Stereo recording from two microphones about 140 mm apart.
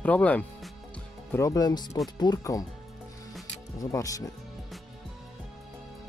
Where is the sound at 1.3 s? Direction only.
25° left (ahead or behind).